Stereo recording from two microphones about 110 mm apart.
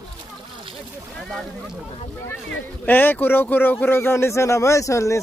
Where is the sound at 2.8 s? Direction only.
20° left (ahead or behind).